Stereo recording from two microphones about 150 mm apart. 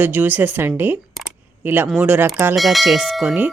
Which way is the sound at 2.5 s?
Centre (ahead or behind).